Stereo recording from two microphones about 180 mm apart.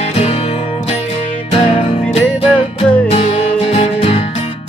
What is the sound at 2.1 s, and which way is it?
Music, 30° left (ahead or behind).